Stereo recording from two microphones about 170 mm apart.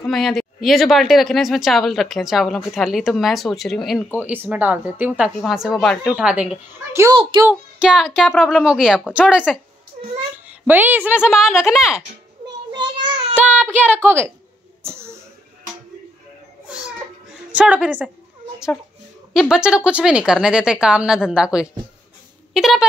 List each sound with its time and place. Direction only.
0.0 s speech: centre (ahead or behind)
4.2 s speech: 10° right (ahead or behind)
12.7 s child singing: 30° right (ahead or behind)
13.4 s child singing: 10° right (ahead or behind)
13.7 s speech: 10° right (ahead or behind)
14.8 s a sound: 15° right (ahead or behind)
17.5 s speech: 5° right (ahead or behind)
19.5 s speech: 5° right (ahead or behind)